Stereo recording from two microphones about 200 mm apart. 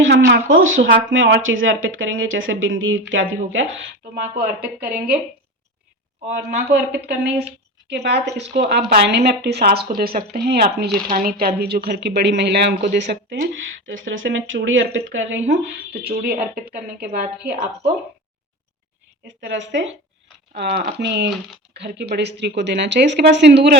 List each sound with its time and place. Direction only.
0.1 s a sound: 55° right (ahead or behind)
0.4 s speech: 75° right (ahead or behind)
4.1 s speech: 50° right (ahead or behind)
6.3 s speech: 55° right (ahead or behind)
19.5 s speech: 65° right (ahead or behind)
20.6 s speech: 50° right (ahead or behind)